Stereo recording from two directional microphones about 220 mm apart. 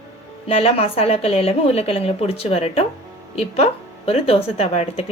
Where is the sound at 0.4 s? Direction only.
25° left (ahead or behind).